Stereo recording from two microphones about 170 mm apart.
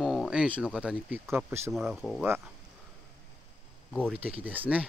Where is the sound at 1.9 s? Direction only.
Centre (ahead or behind).